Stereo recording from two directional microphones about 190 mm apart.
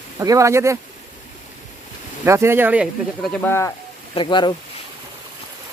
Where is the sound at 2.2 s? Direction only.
15° right (ahead or behind).